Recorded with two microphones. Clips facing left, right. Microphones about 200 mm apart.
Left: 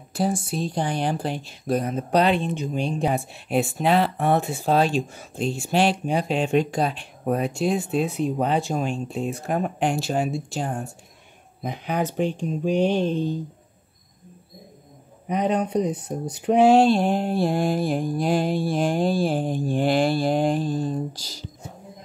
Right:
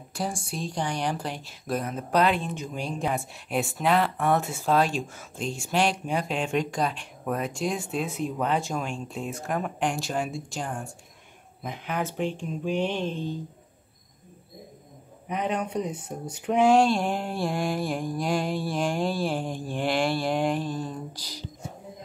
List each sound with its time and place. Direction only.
0.3 s speech: 5° left (ahead or behind)
0.7 s speech: 30° left (ahead or behind)
15.2 s speech: 35° left (ahead or behind)